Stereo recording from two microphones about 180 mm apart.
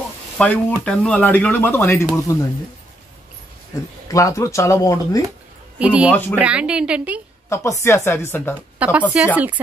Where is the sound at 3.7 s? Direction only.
20° left (ahead or behind).